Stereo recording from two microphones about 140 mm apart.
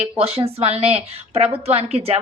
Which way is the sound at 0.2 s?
45° right (ahead or behind).